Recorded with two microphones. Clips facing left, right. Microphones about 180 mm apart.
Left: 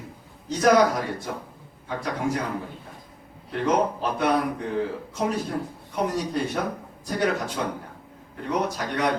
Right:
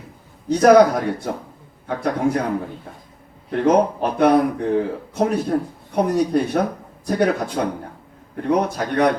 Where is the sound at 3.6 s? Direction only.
60° right (ahead or behind).